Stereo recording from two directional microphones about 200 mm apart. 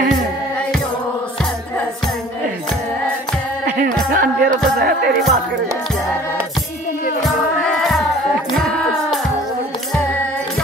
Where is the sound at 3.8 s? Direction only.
45° right (ahead or behind).